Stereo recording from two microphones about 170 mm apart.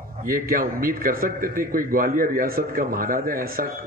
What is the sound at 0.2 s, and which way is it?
A man's voice, 55° right (ahead or behind).